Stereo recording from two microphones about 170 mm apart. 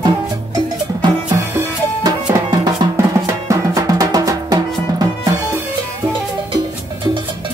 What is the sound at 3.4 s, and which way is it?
Music, 20° right (ahead or behind).